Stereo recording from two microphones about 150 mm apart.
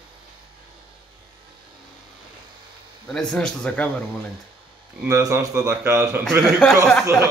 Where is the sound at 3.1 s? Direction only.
5° left (ahead or behind).